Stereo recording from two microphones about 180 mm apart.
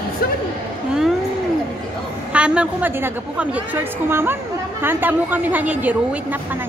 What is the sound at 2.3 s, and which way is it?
A woman's voice, 5° right (ahead or behind).